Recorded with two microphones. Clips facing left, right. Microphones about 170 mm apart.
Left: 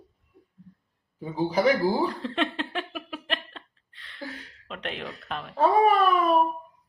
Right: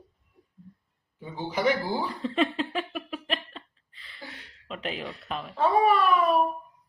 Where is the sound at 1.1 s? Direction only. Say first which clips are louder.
Left 7 dB; 35° left (ahead or behind).